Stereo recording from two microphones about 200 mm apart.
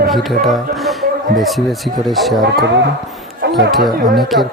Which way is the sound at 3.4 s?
55° right (ahead or behind).